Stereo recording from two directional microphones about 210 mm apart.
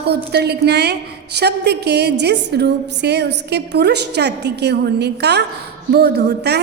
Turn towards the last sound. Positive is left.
turn(degrees=-50)  # may be behind; listen again after turning